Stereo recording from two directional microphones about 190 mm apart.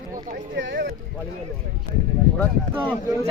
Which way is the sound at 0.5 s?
65° right (ahead or behind).